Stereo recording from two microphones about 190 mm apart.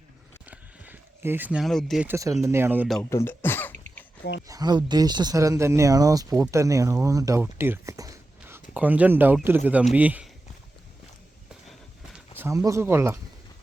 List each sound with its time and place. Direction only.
0.4 s a sound: 10° right (ahead or behind)
2.0 s speech: 15° right (ahead or behind)
3.0 s throat clearing: 15° left (ahead or behind)
4.4 s speech: 20° right (ahead or behind)
7.6 s whispering: 15° right (ahead or behind)
8.7 s speech: 10° right (ahead or behind)
12.4 s speech: 15° right (ahead or behind)